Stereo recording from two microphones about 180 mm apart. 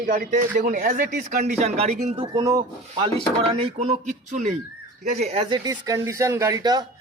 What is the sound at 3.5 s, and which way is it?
A man's voice, 35° right (ahead or behind).